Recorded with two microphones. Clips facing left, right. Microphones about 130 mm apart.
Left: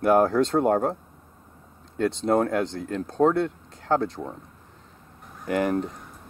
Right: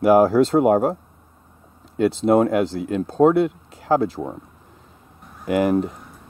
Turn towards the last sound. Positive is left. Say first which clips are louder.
# right 5 dB
turn(degrees=-5)  # may be behind; listen again after turning